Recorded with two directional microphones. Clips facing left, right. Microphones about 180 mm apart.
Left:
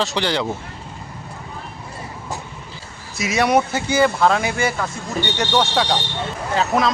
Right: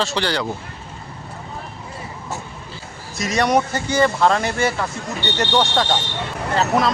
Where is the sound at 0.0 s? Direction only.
15° left (ahead or behind).